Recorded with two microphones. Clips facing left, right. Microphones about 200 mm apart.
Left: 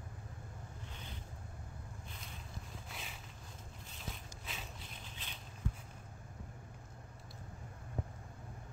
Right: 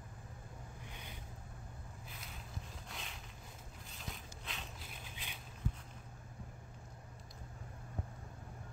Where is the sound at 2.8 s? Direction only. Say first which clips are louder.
Even; 5° left (ahead or behind).